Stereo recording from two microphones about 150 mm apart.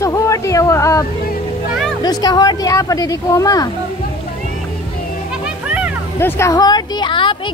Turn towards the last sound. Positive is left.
turn(degrees=35)  # may be behind; listen again after turning